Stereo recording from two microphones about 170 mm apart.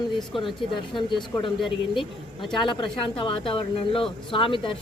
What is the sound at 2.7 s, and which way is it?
Speech, 30° left (ahead or behind).